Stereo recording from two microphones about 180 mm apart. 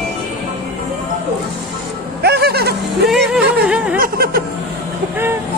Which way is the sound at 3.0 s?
Centre (ahead or behind).